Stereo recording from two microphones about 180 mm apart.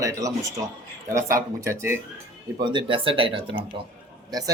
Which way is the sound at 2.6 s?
25° right (ahead or behind).